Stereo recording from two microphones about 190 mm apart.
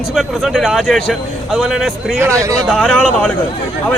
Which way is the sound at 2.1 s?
15° right (ahead or behind).